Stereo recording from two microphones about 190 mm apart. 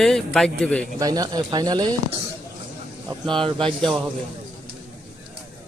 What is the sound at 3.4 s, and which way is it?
Speech, 25° right (ahead or behind).